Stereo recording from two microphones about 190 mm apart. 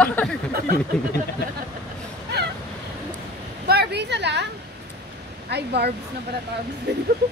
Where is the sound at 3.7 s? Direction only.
60° right (ahead or behind).